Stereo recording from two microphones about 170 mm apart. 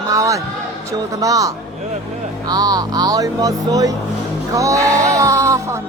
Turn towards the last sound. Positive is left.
turn(degrees=-15)  # may be behind; listen again after turning